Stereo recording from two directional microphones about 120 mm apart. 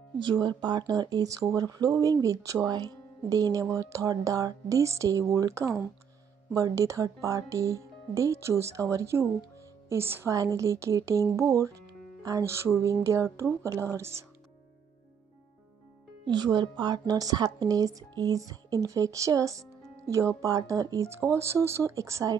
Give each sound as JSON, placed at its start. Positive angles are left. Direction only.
{"t": 0.2, "sound": "speech", "side_deg": -40}
{"t": 16.3, "sound": "speech", "side_deg": -35}